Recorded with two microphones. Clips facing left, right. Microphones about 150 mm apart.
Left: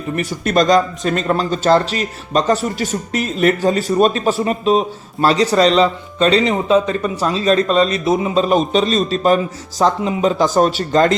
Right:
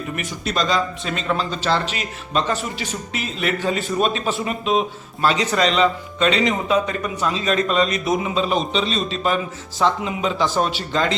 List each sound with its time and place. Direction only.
0.4 s a man's voice: 50° left (ahead or behind); by 8.3 s 30° left (ahead or behind)
8.4 s a man's voice: 45° left (ahead or behind)